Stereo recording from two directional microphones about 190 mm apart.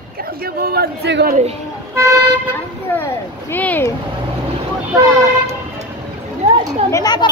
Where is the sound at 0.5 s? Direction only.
50° right (ahead or behind).